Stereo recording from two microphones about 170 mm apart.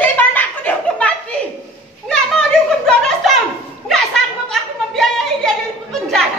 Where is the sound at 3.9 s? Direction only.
Centre (ahead or behind).